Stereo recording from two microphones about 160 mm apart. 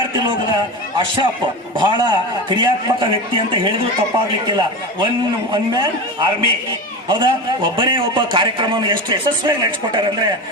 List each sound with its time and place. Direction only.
0.9 s a man's voice: 30° right (ahead or behind)